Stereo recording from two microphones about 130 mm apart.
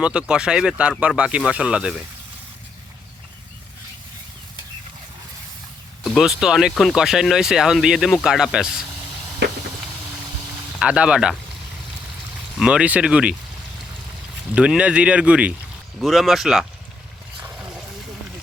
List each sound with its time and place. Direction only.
0.0 s speech: 10° right (ahead or behind)
6.0 s speech: 5° right (ahead or behind)
10.8 s speech: 10° right (ahead or behind)
12.5 s speech: 5° right (ahead or behind)
14.5 s speech: 10° right (ahead or behind)